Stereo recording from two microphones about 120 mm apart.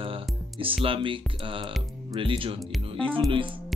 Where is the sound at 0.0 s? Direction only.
50° right (ahead or behind).